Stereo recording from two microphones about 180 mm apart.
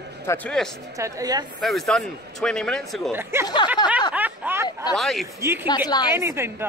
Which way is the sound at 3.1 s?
15° right (ahead or behind).